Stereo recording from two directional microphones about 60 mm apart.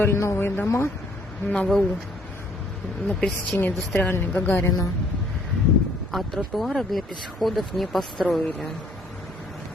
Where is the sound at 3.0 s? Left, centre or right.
Centre.